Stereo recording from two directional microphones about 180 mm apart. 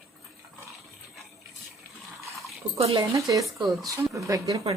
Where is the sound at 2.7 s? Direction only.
35° right (ahead or behind).